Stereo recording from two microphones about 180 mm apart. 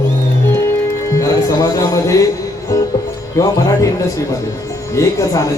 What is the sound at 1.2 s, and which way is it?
Music, 20° left (ahead or behind).